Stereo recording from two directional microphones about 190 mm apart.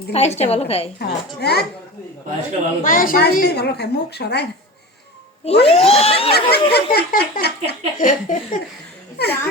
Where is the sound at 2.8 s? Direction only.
45° left (ahead or behind).